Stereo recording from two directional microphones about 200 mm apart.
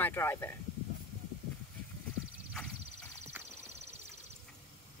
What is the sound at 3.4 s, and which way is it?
Horse, 10° right (ahead or behind).